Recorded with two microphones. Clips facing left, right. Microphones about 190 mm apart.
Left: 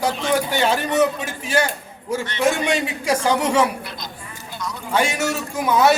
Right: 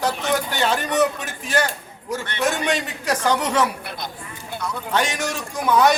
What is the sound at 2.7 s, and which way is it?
A man's voice, 10° left (ahead or behind).